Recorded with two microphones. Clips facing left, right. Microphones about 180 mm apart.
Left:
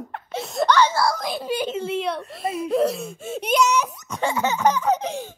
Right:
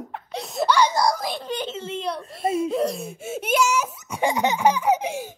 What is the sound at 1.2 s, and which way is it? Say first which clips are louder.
Giggle: left 3 dB; 5° left (ahead or behind).